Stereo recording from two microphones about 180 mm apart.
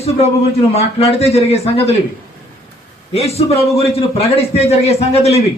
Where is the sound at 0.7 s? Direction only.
35° left (ahead or behind).